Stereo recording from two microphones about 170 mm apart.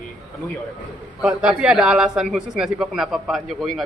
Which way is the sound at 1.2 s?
5° right (ahead or behind).